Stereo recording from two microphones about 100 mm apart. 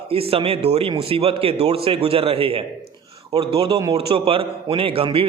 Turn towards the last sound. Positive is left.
turn(degrees=-65)  # may be behind; listen again after turning